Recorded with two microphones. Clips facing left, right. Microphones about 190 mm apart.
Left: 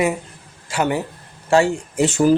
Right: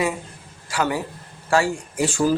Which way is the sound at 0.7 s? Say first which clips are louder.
Left 3 dB; 25° left (ahead or behind).